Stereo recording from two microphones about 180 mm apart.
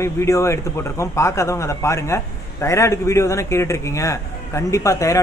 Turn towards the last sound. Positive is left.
turn(degrees=15)  # may be behind; listen again after turning